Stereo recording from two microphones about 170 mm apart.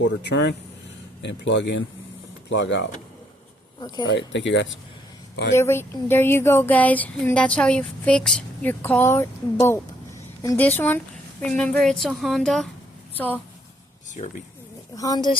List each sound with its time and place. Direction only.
0.0 s speech: 90° left
3.8 s speech: 25° left (ahead or behind)
4.1 s speech: 90° left
5.5 s a woman's voice: 15° left (ahead or behind)
14.2 s speech: 40° left (ahead or behind)
14.9 s a woman's voice: 20° left (ahead or behind)